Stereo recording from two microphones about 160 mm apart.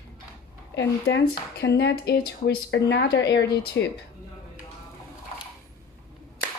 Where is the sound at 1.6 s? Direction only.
90° left.